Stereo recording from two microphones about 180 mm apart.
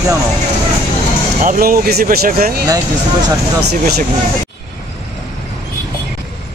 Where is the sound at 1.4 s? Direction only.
50° right (ahead or behind).